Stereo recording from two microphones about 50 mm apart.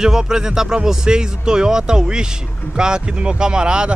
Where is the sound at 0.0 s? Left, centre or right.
Centre.